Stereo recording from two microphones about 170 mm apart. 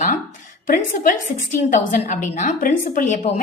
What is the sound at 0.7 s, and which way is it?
A woman's voice, 50° left (ahead or behind).